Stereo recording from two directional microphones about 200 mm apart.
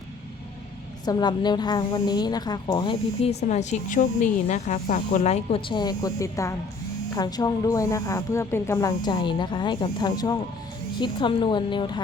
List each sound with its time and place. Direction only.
1.0 s a woman's voice: 20° left (ahead or behind)